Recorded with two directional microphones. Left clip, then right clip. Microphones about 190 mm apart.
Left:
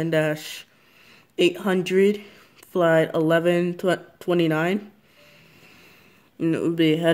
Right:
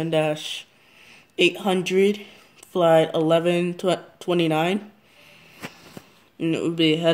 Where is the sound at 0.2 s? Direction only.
20° left (ahead or behind).